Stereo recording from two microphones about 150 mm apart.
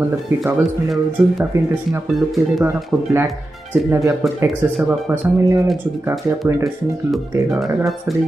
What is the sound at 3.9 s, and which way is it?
Speech, 20° right (ahead or behind).